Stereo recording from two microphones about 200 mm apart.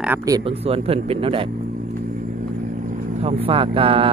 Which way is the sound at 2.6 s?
45° right (ahead or behind).